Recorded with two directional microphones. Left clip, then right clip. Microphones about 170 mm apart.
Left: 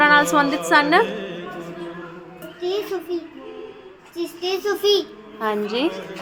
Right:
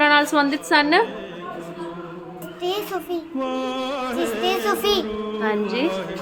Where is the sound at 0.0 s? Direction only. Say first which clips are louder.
Left 2 dB; 10° right (ahead or behind).